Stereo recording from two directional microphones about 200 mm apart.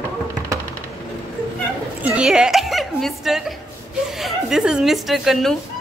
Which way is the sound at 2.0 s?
5° right (ahead or behind).